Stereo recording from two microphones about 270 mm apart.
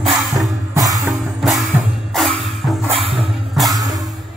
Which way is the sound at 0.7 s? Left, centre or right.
Centre.